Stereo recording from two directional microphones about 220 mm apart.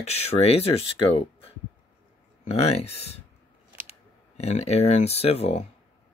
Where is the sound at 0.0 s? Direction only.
30° left (ahead or behind).